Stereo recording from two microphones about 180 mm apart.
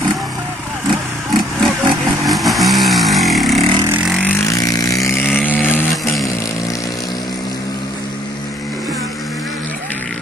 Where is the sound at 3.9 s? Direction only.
Centre (ahead or behind).